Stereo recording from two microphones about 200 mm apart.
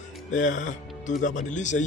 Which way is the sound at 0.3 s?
40° left (ahead or behind).